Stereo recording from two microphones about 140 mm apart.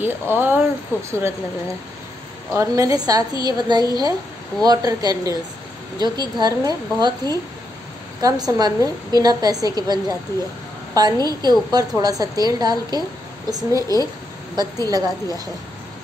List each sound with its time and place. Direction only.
0.0 s speech: 15° right (ahead or behind)
2.5 s a woman's voice: 20° right (ahead or behind)
13.7 s speech: 25° left (ahead or behind)
14.5 s a woman's voice: 30° right (ahead or behind)